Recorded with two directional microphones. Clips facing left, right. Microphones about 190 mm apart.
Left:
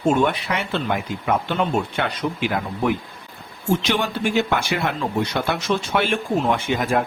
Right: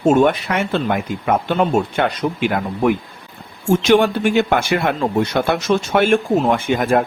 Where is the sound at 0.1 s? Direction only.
45° right (ahead or behind).